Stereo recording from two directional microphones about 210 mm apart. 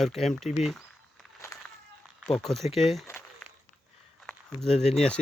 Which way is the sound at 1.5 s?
15° left (ahead or behind).